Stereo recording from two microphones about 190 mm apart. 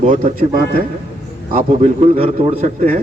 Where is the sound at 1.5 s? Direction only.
35° right (ahead or behind).